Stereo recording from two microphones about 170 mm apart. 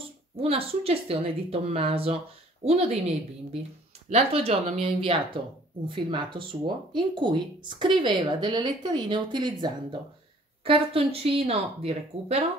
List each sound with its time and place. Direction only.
0.4 s speech: 35° right (ahead or behind)